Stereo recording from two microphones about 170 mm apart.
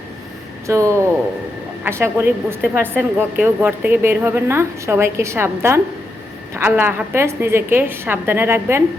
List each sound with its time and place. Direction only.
0.7 s speech: 15° right (ahead or behind)